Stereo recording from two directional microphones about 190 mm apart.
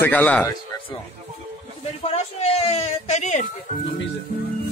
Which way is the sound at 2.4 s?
35° left (ahead or behind).